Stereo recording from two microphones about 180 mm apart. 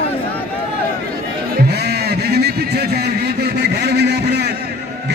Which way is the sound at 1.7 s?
65° right (ahead or behind).